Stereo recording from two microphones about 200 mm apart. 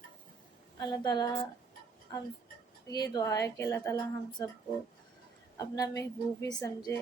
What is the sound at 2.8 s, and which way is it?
A woman's voice, 20° left (ahead or behind).